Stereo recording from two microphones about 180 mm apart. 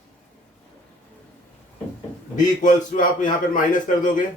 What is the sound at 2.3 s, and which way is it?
A man's voice, 45° left (ahead or behind).